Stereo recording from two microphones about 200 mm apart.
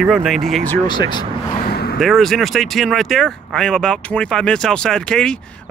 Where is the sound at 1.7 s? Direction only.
50° left (ahead or behind).